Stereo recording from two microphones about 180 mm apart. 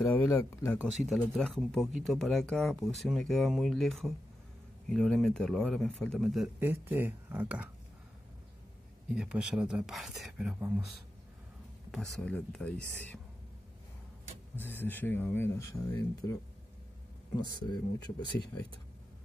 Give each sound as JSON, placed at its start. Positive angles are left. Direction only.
{"t": 0.0, "sound": "speech", "side_deg": 10}
{"t": 0.7, "sound": "speech", "side_deg": 0}
{"t": 6.6, "sound": "speech", "side_deg": -10}
{"t": 9.1, "sound": "speech", "side_deg": -5}
{"t": 11.9, "sound": "speech", "side_deg": 5}
{"t": 14.6, "sound": "speech", "side_deg": 10}
{"t": 17.6, "sound": "speech", "side_deg": 25}